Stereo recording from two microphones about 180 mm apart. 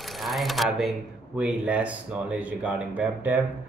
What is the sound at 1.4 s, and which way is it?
Speech, 5° right (ahead or behind).